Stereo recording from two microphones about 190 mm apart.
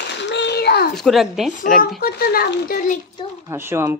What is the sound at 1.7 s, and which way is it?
A child's voice, 55° left (ahead or behind).